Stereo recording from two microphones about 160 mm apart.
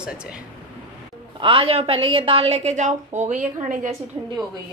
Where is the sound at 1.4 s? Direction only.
35° right (ahead or behind); by 3.9 s 50° right (ahead or behind).